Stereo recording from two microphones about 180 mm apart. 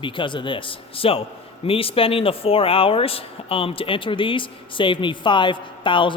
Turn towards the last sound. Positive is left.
turn(degrees=25)  # may be behind; listen again after turning